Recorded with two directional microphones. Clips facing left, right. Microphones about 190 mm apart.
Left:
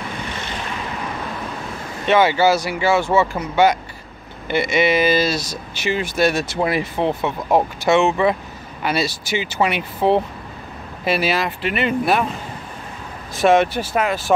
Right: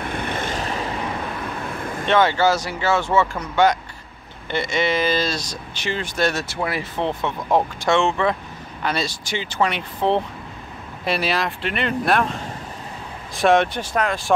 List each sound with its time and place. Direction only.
0.0 s vehicle: 55° right (ahead or behind)
2.0 s speech: 10° left (ahead or behind)
13.4 s speech: centre (ahead or behind)